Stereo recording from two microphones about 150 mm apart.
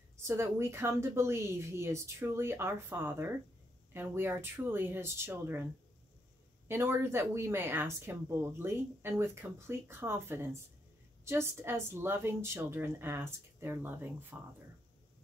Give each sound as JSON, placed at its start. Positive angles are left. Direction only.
{"t": 0.2, "sound": "speech", "side_deg": -15}
{"t": 6.7, "sound": "speech", "side_deg": -15}